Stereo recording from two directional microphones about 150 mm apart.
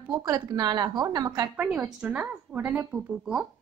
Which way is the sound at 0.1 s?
25° right (ahead or behind).